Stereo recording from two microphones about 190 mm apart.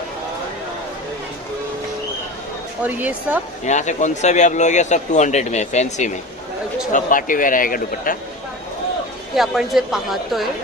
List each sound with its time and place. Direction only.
2.8 s speech: 10° right (ahead or behind)
3.7 s a man's voice: 40° left (ahead or behind)
9.3 s a woman's voice: centre (ahead or behind)